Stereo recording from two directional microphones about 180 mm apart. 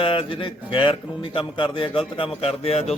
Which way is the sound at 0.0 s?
30° left (ahead or behind).